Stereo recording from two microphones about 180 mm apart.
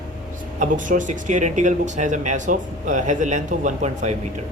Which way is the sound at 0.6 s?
45° right (ahead or behind).